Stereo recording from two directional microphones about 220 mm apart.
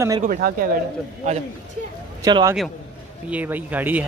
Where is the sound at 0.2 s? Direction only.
40° right (ahead or behind).